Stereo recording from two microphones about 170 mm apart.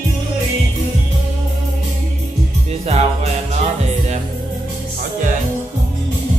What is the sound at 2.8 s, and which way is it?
Music, 40° right (ahead or behind).